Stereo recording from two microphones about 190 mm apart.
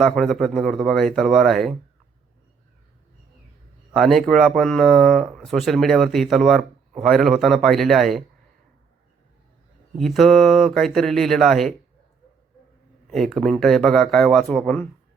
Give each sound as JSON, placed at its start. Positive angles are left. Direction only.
{"t": 0.0, "sound": "speech", "side_deg": 0}
{"t": 3.9, "sound": "speech", "side_deg": 0}
{"t": 10.0, "sound": "speech", "side_deg": 0}
{"t": 13.1, "sound": "speech", "side_deg": 0}